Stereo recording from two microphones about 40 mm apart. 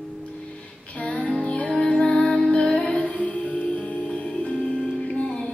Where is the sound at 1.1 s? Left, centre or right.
Left.